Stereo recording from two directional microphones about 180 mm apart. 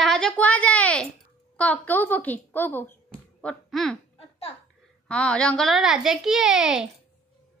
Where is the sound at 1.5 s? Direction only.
10° left (ahead or behind).